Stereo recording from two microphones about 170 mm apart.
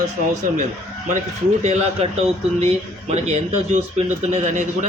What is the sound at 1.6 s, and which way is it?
Speech, 40° right (ahead or behind).